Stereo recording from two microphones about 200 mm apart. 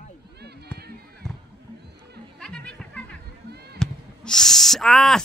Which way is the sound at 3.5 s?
55° right (ahead or behind).